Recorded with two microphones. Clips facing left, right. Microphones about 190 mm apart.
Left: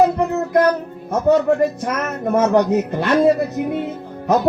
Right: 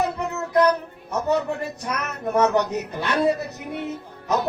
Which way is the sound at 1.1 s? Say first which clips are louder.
Left 8 dB; 65° left (ahead or behind).